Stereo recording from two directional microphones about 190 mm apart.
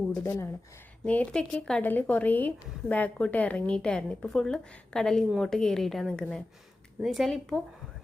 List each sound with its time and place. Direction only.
0.2 s a woman's voice: 15° left (ahead or behind)